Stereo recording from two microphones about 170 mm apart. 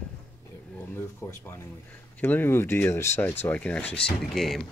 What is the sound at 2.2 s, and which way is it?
Speech, 10° left (ahead or behind).